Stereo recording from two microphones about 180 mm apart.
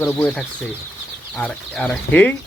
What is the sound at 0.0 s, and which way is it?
Speech, 10° left (ahead or behind).